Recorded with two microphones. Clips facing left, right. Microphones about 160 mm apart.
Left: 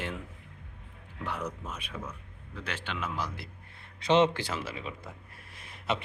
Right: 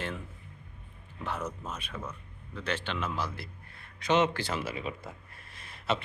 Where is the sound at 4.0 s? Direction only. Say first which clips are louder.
Left 2 dB; 30° left (ahead or behind).